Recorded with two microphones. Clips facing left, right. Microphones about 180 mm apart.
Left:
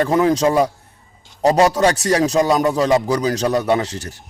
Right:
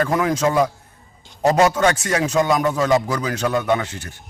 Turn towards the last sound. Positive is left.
turn(degrees=40)  # may be behind; listen again after turning